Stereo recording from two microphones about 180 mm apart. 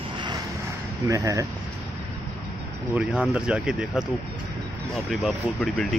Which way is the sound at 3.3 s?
5° right (ahead or behind).